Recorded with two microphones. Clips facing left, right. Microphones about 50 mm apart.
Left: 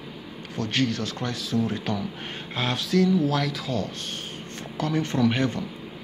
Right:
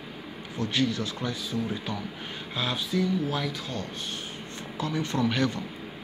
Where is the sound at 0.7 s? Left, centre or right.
Left.